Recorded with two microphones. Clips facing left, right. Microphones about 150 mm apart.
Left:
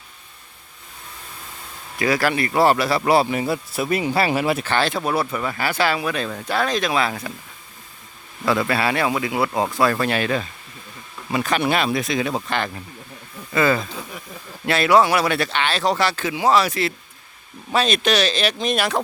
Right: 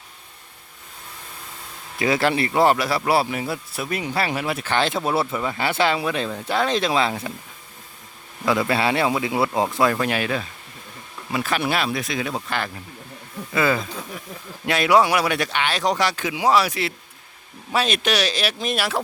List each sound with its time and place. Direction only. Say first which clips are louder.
2.0 s speech: even; 25° right (ahead or behind)
2.5 s speech: left 3 dB; 15° right (ahead or behind); by 4.6 s 5° left (ahead or behind)
4.6 s speech: left 1 dB; 15° right (ahead or behind)
8.6 s speech: even; 20° right (ahead or behind); by 18.9 s 5° right (ahead or behind)